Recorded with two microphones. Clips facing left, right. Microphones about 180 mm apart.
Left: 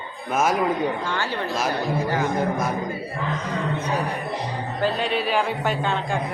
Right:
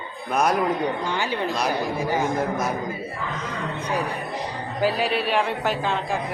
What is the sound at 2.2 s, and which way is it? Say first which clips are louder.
Speech: left 1 dB; centre (ahead or behind).